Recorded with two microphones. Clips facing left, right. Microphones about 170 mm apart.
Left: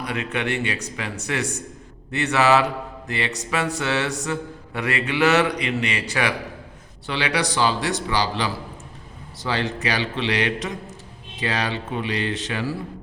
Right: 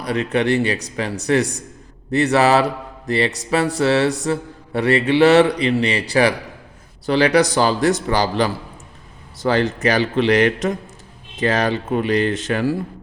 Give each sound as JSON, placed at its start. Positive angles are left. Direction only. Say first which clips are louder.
{"t": 0.0, "sound": "a man's voice", "louder": "right 7 dB", "side_deg": -35}